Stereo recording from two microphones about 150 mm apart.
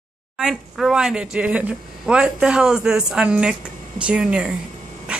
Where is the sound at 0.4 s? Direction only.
Centre (ahead or behind).